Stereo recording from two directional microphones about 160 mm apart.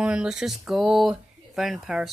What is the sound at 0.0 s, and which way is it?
Speech, 5° right (ahead or behind).